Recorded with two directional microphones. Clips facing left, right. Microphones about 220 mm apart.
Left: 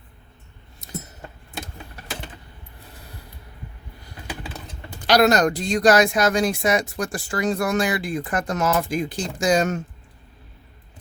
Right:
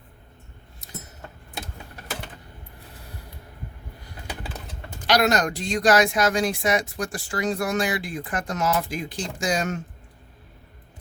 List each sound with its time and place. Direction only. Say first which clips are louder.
5.0 s speech: left 4 dB; 35° left (ahead or behind)